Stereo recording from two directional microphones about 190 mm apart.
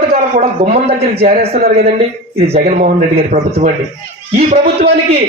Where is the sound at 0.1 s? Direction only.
50° right (ahead or behind).